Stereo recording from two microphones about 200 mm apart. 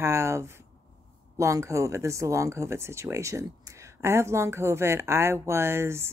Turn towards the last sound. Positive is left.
turn(degrees=-10)  # may be behind; listen again after turning